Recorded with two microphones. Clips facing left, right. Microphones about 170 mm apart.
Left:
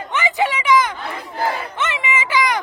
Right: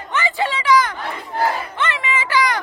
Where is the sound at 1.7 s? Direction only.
20° left (ahead or behind).